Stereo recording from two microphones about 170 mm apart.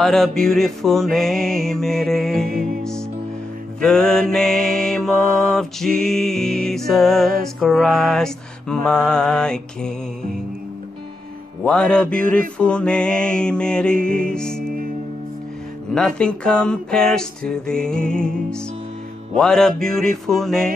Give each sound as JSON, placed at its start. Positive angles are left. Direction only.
{"t": 0.0, "sound": "speech", "side_deg": 0}
{"t": 2.5, "sound": "music", "side_deg": -55}
{"t": 3.8, "sound": "speech", "side_deg": 5}
{"t": 11.6, "sound": "speech", "side_deg": 5}
{"t": 15.9, "sound": "speech", "side_deg": 5}